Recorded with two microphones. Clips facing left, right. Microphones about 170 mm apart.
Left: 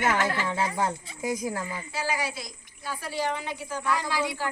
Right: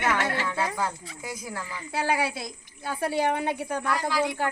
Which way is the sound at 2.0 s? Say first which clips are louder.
Right 4 dB; 60° right (ahead or behind).